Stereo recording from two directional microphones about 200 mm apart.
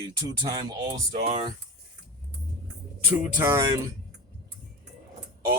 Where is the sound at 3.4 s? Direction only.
10° right (ahead or behind).